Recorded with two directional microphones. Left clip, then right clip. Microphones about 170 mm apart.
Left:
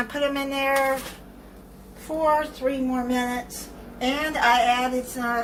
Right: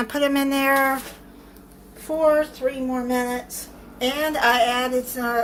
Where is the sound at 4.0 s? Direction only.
65° right (ahead or behind).